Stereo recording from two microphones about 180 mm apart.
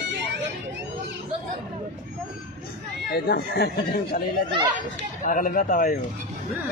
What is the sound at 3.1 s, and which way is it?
Speech, 60° left (ahead or behind).